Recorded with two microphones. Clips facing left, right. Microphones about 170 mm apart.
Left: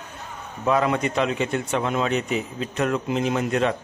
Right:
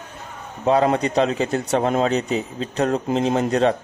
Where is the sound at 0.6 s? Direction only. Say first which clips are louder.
Right 4 dB; 35° right (ahead or behind).